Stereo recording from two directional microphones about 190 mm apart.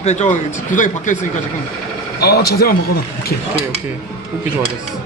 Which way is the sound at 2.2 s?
55° left (ahead or behind).